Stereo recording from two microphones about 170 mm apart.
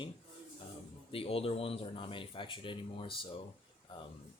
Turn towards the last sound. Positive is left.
turn(degrees=30)  # may be behind; listen again after turning